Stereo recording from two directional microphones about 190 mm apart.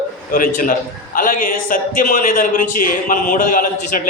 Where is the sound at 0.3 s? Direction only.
45° left (ahead or behind).